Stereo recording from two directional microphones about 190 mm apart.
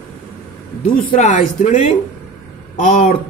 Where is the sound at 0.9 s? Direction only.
45° left (ahead or behind).